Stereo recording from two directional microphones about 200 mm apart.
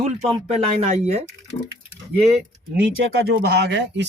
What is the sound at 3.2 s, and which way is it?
Speech, 55° right (ahead or behind).